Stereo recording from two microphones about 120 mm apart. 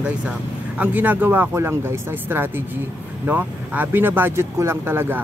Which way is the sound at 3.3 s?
15° right (ahead or behind).